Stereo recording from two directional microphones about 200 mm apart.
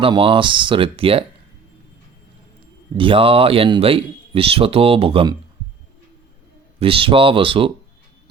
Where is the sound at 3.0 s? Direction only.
25° right (ahead or behind).